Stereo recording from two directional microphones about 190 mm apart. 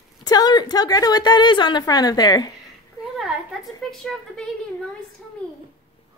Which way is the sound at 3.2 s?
Centre (ahead or behind).